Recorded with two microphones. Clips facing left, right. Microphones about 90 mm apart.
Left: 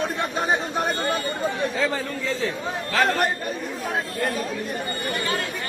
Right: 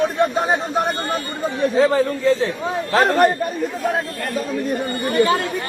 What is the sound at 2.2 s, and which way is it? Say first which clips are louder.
A man's voice: right 8 dB; 30° right (ahead or behind).